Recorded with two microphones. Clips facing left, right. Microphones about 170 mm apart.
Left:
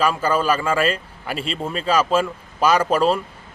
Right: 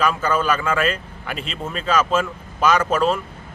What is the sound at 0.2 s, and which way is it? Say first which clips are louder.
A man's voice: left 1 dB; 30° left (ahead or behind).